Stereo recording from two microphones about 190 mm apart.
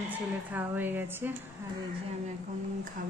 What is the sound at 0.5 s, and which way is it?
Speech, 10° right (ahead or behind).